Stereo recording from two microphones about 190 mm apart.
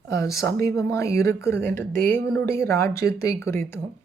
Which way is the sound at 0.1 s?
15° left (ahead or behind).